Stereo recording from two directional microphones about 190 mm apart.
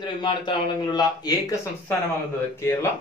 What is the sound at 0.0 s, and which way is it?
A man's voice, 25° left (ahead or behind).